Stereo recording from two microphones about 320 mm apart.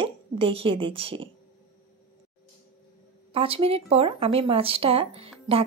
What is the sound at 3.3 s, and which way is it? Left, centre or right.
Speech, centre.